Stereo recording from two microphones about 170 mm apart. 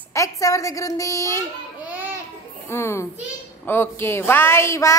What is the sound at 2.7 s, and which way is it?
Speech, 15° left (ahead or behind).